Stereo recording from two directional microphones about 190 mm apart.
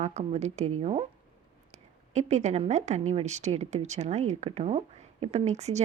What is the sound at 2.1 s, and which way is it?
Speech, 35° right (ahead or behind).